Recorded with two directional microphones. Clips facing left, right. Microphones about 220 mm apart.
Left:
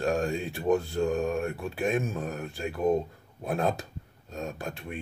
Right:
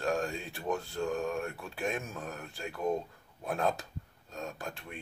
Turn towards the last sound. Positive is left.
turn(degrees=20)  # may be behind; listen again after turning